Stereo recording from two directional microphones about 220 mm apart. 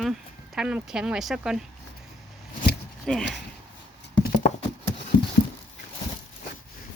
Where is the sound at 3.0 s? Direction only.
5° left (ahead or behind).